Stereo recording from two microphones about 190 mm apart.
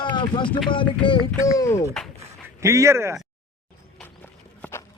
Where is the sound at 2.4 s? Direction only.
15° right (ahead or behind).